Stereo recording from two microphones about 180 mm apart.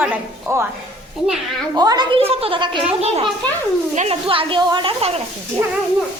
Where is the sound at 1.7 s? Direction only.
20° right (ahead or behind).